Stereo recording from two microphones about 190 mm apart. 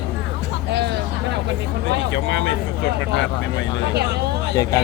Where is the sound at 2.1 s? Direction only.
80° left.